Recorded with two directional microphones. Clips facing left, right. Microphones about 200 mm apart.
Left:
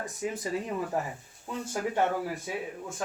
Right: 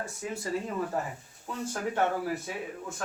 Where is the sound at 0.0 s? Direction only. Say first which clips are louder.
Left 2 dB; 15° left (ahead or behind).